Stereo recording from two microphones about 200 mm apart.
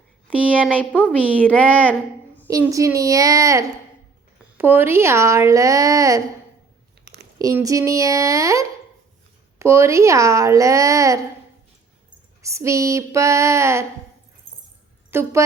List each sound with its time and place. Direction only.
0.6 s a woman's voice: 5° left (ahead or behind)
2.5 s speech: 15° right (ahead or behind)
7.0 s a sound: 55° right (ahead or behind)
7.3 s speech: 15° right (ahead or behind)
12.4 s speech: 15° right (ahead or behind)
15.1 s speech: 10° right (ahead or behind)